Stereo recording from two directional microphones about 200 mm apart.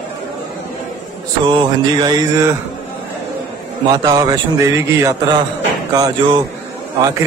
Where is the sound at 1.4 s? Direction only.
20° right (ahead or behind).